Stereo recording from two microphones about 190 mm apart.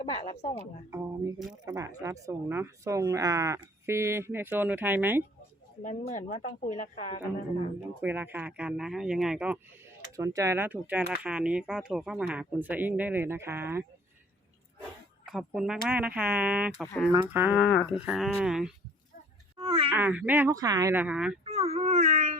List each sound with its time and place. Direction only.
0.9 s speech: 15° right (ahead or behind)
5.8 s speech: 40° left (ahead or behind)
7.8 s speech: 10° right (ahead or behind)
10.3 s speech: 15° right (ahead or behind)
15.3 s speech: centre (ahead or behind)
19.5 s groan: 30° right (ahead or behind)
19.9 s speech: 10° right (ahead or behind)
21.4 s whimper: 35° right (ahead or behind)